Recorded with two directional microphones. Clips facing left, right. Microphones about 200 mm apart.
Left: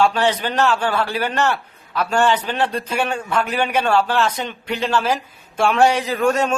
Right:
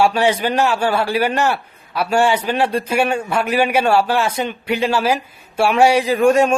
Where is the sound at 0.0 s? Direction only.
10° right (ahead or behind).